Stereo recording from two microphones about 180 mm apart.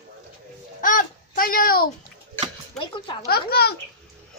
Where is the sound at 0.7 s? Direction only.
45° left (ahead or behind).